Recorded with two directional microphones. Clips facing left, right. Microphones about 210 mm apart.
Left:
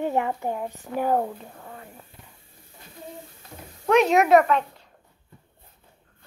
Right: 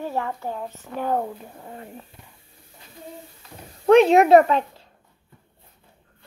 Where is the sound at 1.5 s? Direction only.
20° right (ahead or behind).